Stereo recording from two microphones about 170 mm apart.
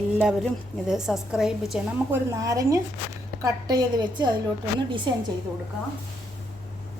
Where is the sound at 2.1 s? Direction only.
20° right (ahead or behind).